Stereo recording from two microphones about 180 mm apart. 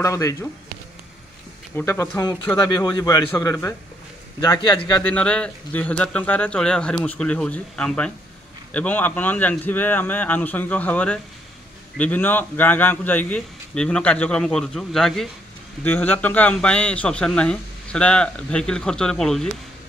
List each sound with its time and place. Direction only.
0.0 s a man's voice: 15° left (ahead or behind)
1.8 s a man's voice: 15° left (ahead or behind)
5.0 s a man's voice: 5° left (ahead or behind)